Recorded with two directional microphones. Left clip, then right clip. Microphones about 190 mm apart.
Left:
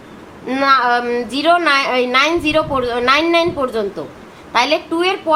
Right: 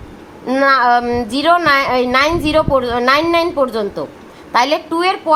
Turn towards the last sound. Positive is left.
turn(degrees=-40)  # may be behind; listen again after turning